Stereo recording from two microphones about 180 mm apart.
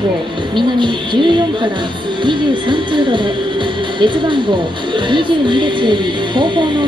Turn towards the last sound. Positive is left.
turn(degrees=-25)  # may be behind; listen again after turning